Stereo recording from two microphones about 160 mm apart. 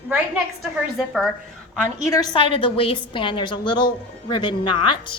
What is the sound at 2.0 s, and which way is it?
A woman's voice, 25° left (ahead or behind).